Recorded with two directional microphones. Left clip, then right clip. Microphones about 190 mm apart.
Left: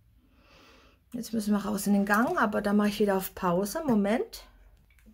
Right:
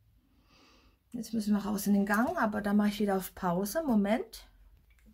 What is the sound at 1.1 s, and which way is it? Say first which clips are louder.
Speech: left 3 dB; 5° left (ahead or behind).